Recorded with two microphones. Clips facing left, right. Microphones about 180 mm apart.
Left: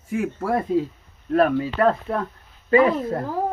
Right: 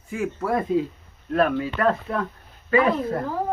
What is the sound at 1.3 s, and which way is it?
Speech, 35° left (ahead or behind).